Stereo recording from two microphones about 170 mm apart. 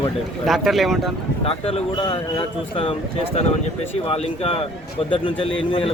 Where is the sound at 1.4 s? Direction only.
35° left (ahead or behind).